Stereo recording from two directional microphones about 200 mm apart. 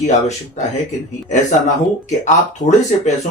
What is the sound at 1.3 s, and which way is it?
Speech, 35° left (ahead or behind).